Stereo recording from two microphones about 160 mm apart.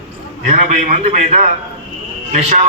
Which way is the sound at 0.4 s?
50° right (ahead or behind).